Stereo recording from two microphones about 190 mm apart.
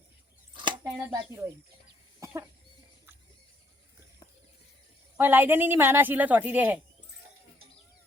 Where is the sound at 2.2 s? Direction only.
15° right (ahead or behind).